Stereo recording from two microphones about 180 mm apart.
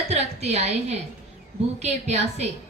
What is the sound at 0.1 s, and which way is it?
A woman's voice, 35° right (ahead or behind).